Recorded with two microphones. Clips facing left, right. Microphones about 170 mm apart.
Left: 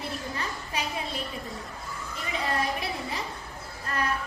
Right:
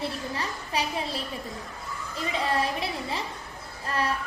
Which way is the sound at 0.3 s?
35° right (ahead or behind).